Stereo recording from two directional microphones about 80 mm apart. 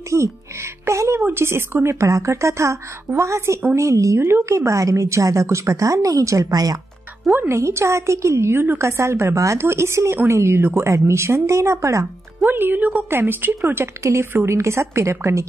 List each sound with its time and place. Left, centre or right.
0.1 s a woman's voice: right
7.2 s a woman's voice: right
12.4 s a woman's voice: right